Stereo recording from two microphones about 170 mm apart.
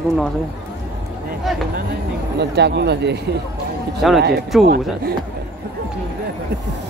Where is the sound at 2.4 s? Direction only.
80° right.